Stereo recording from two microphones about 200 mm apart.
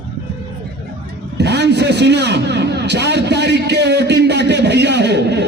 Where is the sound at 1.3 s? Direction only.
60° right (ahead or behind).